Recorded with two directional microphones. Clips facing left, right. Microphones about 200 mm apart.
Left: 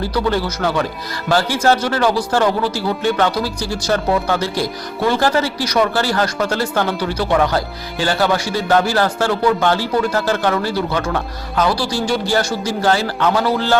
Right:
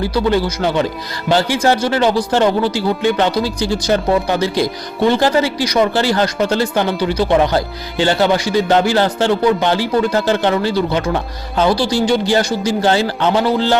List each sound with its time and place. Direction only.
0.0 s speech: 15° right (ahead or behind)